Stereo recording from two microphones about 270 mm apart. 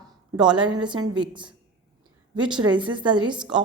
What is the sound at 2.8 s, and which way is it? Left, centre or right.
Speech, centre.